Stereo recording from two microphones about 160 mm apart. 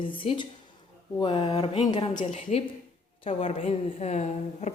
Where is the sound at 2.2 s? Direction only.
40° left (ahead or behind).